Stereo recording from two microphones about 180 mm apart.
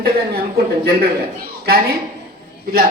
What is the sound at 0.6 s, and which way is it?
Speech, 60° right (ahead or behind).